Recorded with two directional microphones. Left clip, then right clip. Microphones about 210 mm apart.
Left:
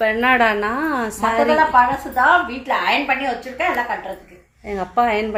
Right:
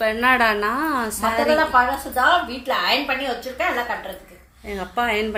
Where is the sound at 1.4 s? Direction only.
30° right (ahead or behind).